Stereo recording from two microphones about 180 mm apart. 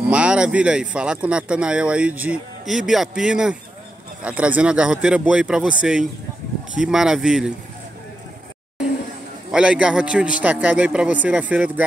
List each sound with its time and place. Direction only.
0.1 s speech: 5° right (ahead or behind)
9.5 s speech: 5° right (ahead or behind)